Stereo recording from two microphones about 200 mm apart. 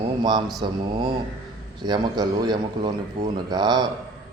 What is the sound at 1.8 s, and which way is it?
A man's voice, 20° right (ahead or behind).